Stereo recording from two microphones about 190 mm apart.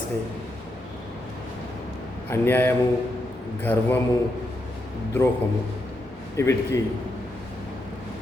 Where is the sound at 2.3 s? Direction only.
10° left (ahead or behind).